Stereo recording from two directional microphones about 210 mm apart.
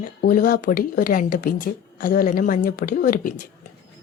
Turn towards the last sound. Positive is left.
turn(degrees=40)  # may be behind; listen again after turning